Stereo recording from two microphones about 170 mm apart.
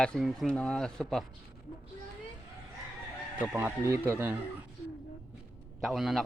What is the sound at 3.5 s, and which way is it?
Speech, 15° right (ahead or behind).